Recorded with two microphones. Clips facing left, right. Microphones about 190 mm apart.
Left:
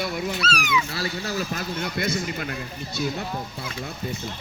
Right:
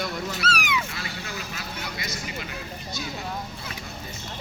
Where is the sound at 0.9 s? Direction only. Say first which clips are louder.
Left 7 dB; 35° left (ahead or behind); by 2.5 s 55° left (ahead or behind).